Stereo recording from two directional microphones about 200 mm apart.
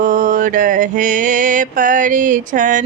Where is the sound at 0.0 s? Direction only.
40° right (ahead or behind).